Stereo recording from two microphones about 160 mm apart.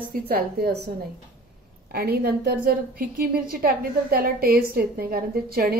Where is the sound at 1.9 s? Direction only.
75° right (ahead or behind).